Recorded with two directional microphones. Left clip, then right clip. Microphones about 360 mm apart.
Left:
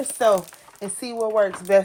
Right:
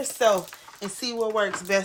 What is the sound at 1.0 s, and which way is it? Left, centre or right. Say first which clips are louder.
Speech: left 4 dB; centre.